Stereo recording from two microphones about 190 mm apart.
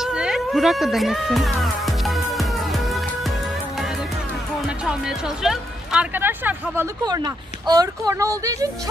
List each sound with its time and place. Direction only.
0.0 s music: 5° right (ahead or behind)
4.6 s speech: 5° right (ahead or behind)
7.1 s speech: 20° right (ahead or behind)